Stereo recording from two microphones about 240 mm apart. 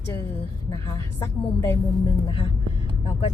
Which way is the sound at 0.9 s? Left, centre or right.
Centre.